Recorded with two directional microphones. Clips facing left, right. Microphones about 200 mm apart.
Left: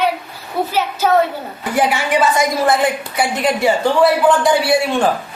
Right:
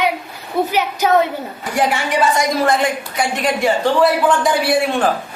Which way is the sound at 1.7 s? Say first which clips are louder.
Left 2 dB; centre (ahead or behind).